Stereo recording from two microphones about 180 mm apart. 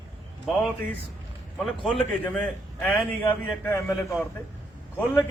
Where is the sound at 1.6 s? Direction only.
Centre (ahead or behind); by 3.9 s 15° left (ahead or behind).